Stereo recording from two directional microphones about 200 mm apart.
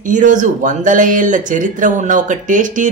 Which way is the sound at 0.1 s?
40° right (ahead or behind).